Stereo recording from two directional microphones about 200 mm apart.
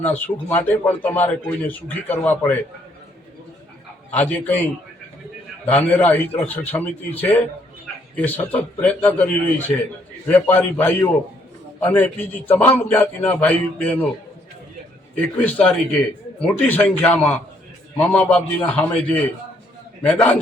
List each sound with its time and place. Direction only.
0.0 s a man's voice: 10° left (ahead or behind)
4.1 s a man's voice: 10° left (ahead or behind)
5.6 s a man's voice: 10° left (ahead or behind)
15.1 s a man's voice: 5° left (ahead or behind)